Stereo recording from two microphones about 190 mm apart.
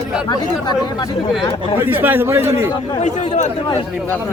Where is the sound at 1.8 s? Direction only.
10° right (ahead or behind).